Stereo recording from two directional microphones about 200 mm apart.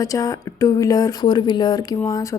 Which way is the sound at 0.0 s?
15° left (ahead or behind).